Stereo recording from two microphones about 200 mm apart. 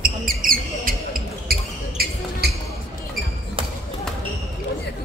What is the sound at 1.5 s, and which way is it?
Basketball bounce, 50° right (ahead or behind).